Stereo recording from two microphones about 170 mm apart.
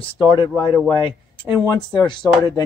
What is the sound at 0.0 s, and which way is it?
Speech, 25° left (ahead or behind).